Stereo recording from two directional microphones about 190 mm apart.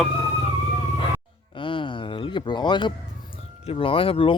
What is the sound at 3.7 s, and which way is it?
Speech, 30° left (ahead or behind).